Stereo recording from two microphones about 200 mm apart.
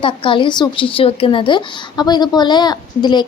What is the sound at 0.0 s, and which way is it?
A woman's voice, 25° left (ahead or behind).